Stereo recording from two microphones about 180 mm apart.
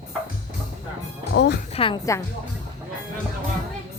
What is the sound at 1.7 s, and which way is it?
Music, 30° left (ahead or behind).